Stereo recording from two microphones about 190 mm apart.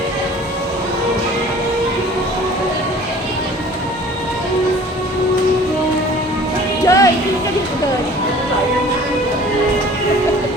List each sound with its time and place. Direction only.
6.8 s music: 15° left (ahead or behind)